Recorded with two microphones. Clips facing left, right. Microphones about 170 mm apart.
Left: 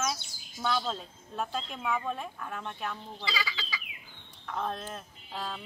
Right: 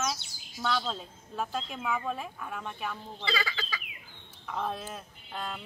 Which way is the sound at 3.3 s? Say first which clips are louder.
Right 3 dB; 50° right (ahead or behind).